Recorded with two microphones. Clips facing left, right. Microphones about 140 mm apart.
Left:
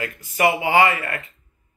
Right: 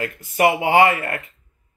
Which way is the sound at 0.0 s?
55° right (ahead or behind).